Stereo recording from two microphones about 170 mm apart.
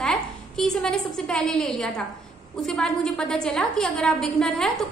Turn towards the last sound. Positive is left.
turn(degrees=5)  # may be behind; listen again after turning